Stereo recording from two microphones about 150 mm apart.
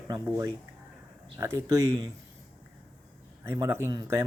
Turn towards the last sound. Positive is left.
turn(degrees=-25)  # may be behind; listen again after turning